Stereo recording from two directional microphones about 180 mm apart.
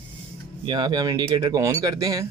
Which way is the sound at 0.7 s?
25° right (ahead or behind).